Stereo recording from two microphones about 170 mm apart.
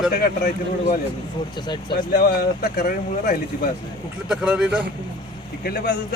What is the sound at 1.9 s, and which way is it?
Speech, 60° left (ahead or behind).